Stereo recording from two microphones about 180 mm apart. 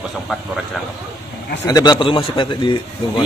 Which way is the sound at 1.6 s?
20° left (ahead or behind).